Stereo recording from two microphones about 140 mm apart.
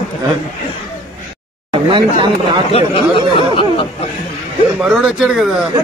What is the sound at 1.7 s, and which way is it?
Speech, 35° right (ahead or behind).